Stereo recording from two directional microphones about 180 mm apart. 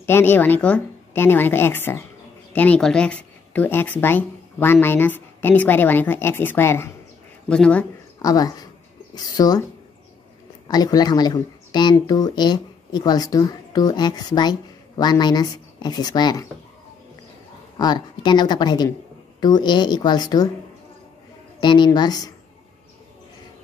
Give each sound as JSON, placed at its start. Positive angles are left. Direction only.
{"t": 0.0, "sound": "speech", "side_deg": 10}
{"t": 8.2, "sound": "speech", "side_deg": 20}
{"t": 10.7, "sound": "speech", "side_deg": 20}
{"t": 17.7, "sound": "speech", "side_deg": 25}
{"t": 21.5, "sound": "speech", "side_deg": 25}